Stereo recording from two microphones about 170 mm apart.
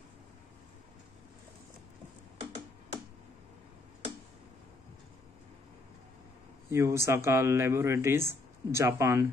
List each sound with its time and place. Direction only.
6.7 s speech: 15° right (ahead or behind)